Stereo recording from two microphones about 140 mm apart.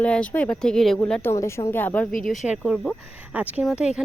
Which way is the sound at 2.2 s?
5° right (ahead or behind).